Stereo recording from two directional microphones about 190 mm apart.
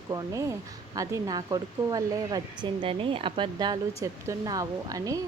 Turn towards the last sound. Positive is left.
turn(degrees=-20)  # may be behind; listen again after turning